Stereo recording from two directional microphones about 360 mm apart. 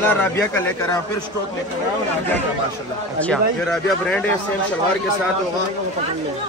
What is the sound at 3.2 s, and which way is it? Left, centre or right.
Speech, centre.